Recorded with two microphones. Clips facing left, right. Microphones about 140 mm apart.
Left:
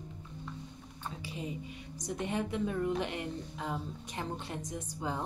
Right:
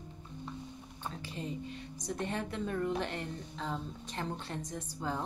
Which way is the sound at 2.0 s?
15° left (ahead or behind).